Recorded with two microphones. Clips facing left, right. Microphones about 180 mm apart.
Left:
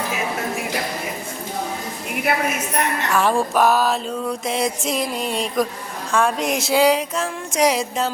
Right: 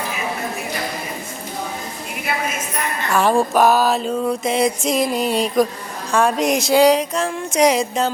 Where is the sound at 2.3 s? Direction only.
65° left (ahead or behind).